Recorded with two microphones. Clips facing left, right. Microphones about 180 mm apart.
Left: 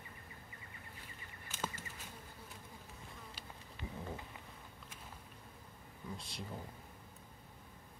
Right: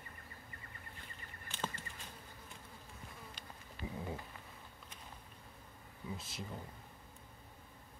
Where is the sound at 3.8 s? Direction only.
20° left (ahead or behind).